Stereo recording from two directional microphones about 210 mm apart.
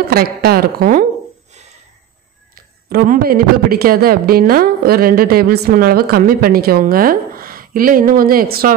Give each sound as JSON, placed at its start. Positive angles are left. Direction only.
{"t": 0.1, "sound": "a woman's voice", "side_deg": -45}
{"t": 2.5, "sound": "a woman's voice", "side_deg": -45}